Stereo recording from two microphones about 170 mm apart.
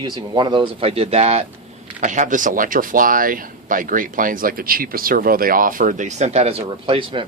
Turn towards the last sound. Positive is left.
turn(degrees=-30)  # may be behind; listen again after turning